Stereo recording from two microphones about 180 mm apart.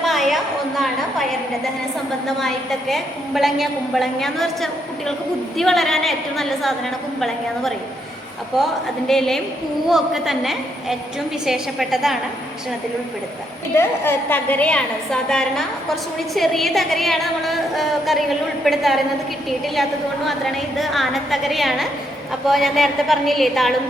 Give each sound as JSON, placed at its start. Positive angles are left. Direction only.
{"t": 0.0, "sound": "a sound", "side_deg": 0}
{"t": 2.2, "sound": "a woman's voice", "side_deg": 0}
{"t": 13.7, "sound": "a woman's voice", "side_deg": 10}